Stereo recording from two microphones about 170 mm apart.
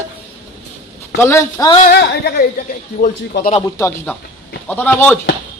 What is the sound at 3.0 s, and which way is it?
Speech, 60° left (ahead or behind).